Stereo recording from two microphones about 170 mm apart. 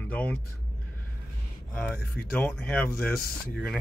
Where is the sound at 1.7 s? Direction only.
10° left (ahead or behind).